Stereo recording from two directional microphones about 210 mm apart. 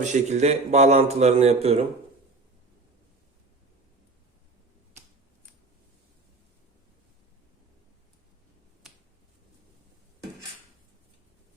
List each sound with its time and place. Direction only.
0.0 s a man's voice: 35° right (ahead or behind)